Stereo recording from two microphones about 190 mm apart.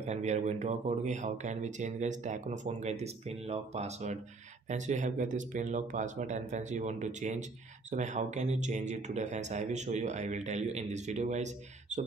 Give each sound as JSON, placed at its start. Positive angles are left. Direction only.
{"t": 0.0, "sound": "speech", "side_deg": -35}